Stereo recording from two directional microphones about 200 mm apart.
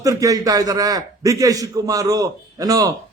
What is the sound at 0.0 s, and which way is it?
A man's voice, 15° right (ahead or behind).